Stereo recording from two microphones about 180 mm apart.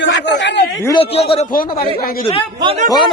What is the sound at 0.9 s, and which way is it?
Speech, 30° left (ahead or behind).